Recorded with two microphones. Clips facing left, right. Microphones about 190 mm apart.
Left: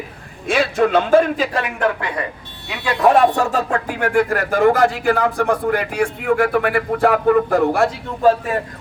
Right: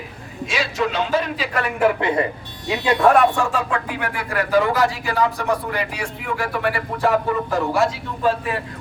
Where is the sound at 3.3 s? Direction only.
40° left (ahead or behind).